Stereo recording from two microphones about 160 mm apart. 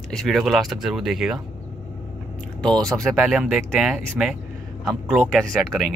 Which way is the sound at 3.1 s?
5° right (ahead or behind).